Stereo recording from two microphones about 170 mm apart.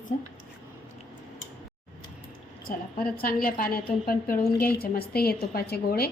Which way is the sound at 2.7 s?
55° left (ahead or behind).